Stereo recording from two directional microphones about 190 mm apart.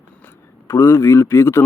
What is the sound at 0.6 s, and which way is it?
Speech, 15° left (ahead or behind).